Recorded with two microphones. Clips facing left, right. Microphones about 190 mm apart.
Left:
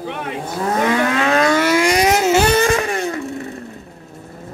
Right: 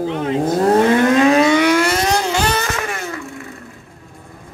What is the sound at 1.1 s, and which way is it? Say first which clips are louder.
Vehicle: right 5 dB; 15° right (ahead or behind).